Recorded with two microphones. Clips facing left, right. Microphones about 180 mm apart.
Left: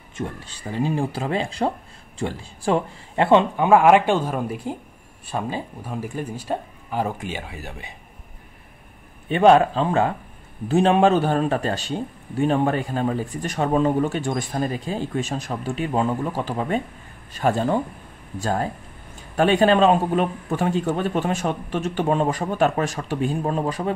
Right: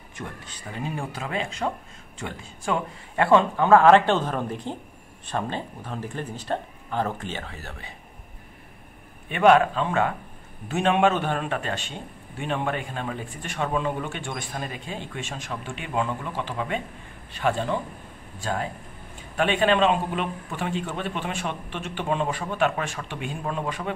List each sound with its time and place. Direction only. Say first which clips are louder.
0.1 s speech: left 7 dB; 25° left (ahead or behind)
9.3 s speech: left 3 dB; 30° left (ahead or behind)